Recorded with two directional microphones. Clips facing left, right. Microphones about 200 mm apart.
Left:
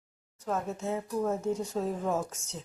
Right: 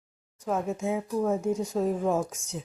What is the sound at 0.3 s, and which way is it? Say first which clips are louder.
A woman's voice: right 4 dB; 10° right (ahead or behind).